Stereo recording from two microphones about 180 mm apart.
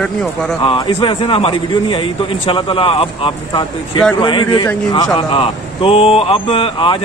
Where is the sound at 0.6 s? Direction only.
30° left (ahead or behind).